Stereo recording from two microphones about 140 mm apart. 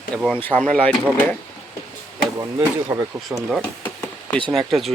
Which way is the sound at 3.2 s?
Centre (ahead or behind).